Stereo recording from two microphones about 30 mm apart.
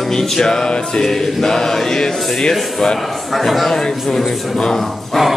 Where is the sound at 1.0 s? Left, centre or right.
Centre.